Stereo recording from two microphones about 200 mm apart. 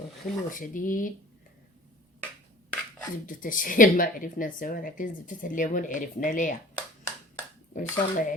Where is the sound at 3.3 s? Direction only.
45° left (ahead or behind).